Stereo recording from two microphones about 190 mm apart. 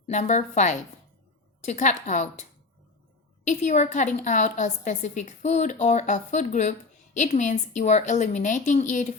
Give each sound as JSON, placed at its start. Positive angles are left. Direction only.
{"t": 0.1, "sound": "a woman's voice", "side_deg": 40}